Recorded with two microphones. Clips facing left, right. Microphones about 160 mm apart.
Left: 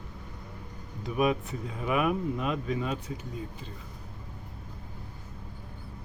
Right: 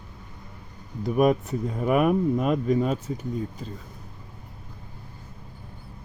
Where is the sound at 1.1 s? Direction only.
45° right (ahead or behind).